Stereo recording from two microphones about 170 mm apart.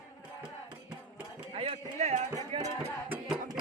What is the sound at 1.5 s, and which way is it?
Run, 35° right (ahead or behind).